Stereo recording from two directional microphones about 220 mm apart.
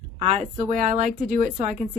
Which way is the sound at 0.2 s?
30° right (ahead or behind).